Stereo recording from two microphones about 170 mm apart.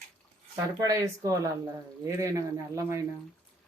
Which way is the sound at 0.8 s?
20° right (ahead or behind).